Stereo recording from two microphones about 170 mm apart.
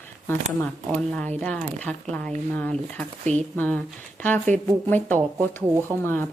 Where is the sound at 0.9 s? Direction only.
5° left (ahead or behind).